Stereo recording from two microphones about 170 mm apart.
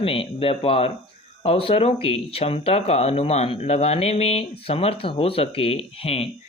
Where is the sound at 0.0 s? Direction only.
35° left (ahead or behind).